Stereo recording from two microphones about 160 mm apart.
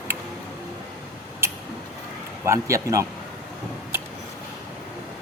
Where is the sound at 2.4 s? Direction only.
15° right (ahead or behind).